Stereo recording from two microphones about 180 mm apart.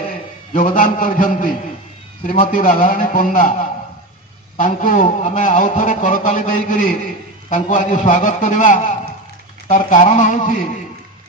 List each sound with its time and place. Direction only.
0.5 s a man's voice: 45° left (ahead or behind)